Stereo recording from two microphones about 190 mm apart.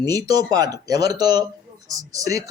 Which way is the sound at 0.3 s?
20° right (ahead or behind).